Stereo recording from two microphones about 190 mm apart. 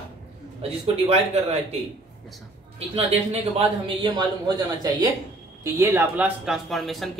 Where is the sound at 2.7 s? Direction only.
30° right (ahead or behind).